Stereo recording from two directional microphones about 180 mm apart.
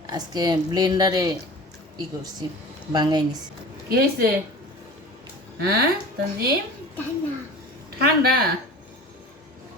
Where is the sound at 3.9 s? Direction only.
60° right (ahead or behind).